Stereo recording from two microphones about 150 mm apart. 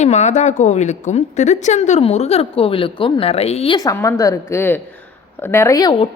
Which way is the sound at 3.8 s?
20° left (ahead or behind).